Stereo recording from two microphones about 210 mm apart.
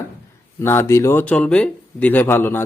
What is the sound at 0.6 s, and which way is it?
A man's voice, 10° left (ahead or behind).